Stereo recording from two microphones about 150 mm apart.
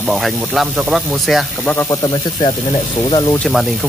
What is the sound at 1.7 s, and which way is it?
Speech, 20° left (ahead or behind).